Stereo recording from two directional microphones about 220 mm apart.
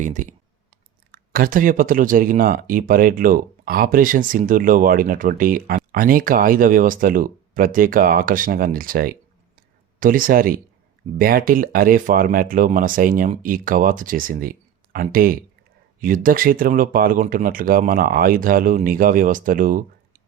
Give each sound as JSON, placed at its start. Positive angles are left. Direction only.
{"t": 0.0, "sound": "speech", "side_deg": -35}